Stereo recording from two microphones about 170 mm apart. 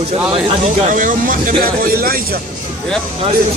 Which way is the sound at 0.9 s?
55° right (ahead or behind).